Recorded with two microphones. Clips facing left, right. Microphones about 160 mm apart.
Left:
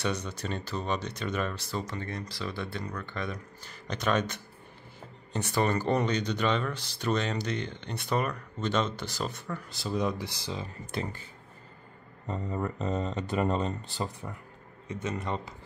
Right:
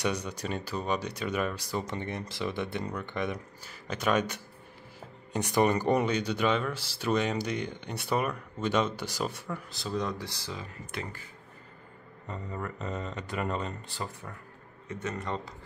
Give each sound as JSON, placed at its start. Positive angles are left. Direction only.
{"t": 0.0, "sound": "speech", "side_deg": -10}
{"t": 3.6, "sound": "speech", "side_deg": -5}
{"t": 10.5, "sound": "speech", "side_deg": 30}
{"t": 12.3, "sound": "speech", "side_deg": 25}
{"t": 14.9, "sound": "speech", "side_deg": 15}